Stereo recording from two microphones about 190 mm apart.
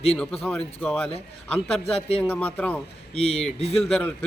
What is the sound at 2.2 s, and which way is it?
A man's voice, 10° left (ahead or behind).